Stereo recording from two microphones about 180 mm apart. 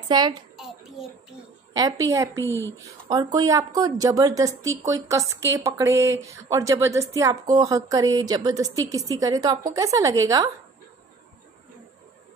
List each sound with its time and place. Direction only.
0.1 s a woman's voice: 25° right (ahead or behind)
1.7 s speech: 20° right (ahead or behind)
2.4 s a woman's voice: 15° left (ahead or behind)
2.8 s a woman's voice: 20° right (ahead or behind)